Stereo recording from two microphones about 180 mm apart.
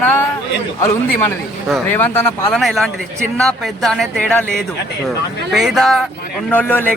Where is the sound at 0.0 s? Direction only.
10° left (ahead or behind).